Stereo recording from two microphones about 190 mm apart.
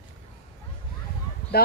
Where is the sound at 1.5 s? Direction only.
55° left (ahead or behind).